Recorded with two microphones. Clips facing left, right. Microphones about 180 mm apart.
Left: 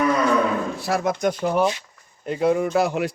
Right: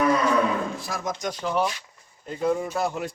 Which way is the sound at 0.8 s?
70° left (ahead or behind).